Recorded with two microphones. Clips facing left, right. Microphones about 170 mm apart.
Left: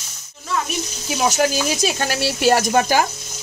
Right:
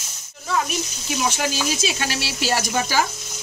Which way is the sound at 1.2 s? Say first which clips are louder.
Left 6 dB; 45° left (ahead or behind).